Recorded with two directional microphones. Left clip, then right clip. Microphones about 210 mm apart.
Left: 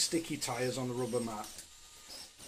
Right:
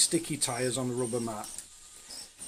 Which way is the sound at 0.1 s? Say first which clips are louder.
Right 4 dB; 25° right (ahead or behind).